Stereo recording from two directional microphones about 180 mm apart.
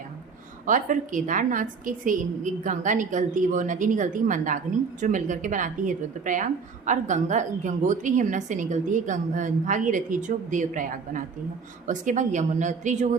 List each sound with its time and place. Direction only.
0.6 s a woman's voice: 45° right (ahead or behind)